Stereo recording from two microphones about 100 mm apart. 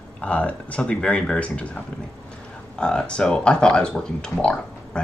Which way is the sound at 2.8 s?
10° left (ahead or behind).